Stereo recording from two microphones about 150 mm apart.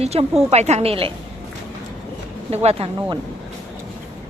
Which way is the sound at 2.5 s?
45° right (ahead or behind).